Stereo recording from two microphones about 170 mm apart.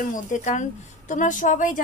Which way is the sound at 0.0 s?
50° left (ahead or behind).